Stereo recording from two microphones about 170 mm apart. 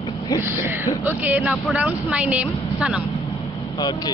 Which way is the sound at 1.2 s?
10° right (ahead or behind).